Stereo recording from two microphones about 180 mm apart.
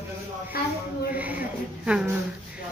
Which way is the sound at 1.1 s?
10° right (ahead or behind).